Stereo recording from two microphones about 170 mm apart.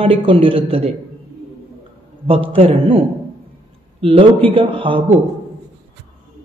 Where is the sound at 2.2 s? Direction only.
35° right (ahead or behind).